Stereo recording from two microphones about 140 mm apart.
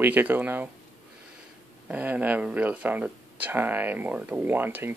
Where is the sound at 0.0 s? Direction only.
10° right (ahead or behind).